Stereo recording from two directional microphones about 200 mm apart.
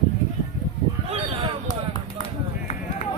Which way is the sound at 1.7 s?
20° left (ahead or behind).